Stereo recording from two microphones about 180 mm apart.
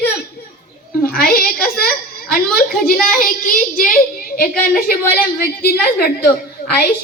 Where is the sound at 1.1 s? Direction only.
60° left (ahead or behind).